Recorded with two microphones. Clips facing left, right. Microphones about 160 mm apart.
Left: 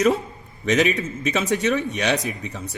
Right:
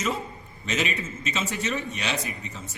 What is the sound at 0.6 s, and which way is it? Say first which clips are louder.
A man's voice: left 9 dB; 65° left (ahead or behind).